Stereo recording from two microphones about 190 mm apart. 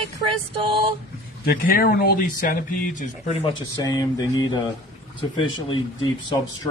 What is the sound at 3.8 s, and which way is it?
Speech, 20° left (ahead or behind).